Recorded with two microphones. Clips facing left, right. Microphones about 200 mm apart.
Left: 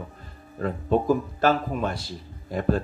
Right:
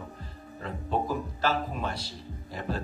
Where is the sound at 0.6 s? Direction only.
50° left (ahead or behind).